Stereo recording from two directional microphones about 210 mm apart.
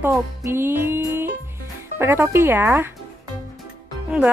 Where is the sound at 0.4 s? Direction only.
10° right (ahead or behind).